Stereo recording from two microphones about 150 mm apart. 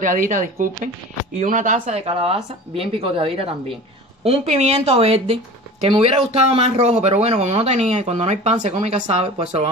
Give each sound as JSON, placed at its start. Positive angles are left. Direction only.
{"t": 0.0, "sound": "speech", "side_deg": -60}